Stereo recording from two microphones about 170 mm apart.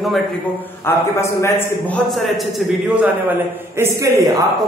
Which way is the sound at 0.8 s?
15° left (ahead or behind).